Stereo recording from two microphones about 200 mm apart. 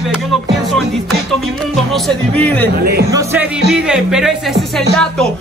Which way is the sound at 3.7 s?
5° right (ahead or behind).